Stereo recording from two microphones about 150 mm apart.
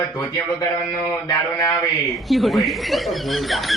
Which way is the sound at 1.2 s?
25° left (ahead or behind).